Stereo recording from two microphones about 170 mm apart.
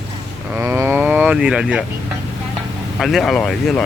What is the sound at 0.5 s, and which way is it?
Cattle, 15° right (ahead or behind).